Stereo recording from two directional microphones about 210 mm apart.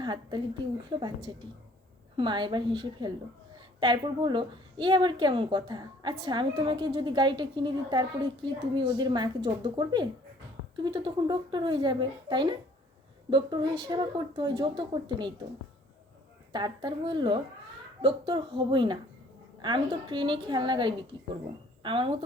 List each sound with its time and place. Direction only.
0.0 s a woman's voice: 20° right (ahead or behind)
16.5 s a woman's voice: 20° right (ahead or behind)